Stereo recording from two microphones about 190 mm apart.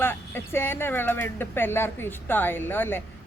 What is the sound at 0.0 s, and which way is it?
Speech, 10° left (ahead or behind).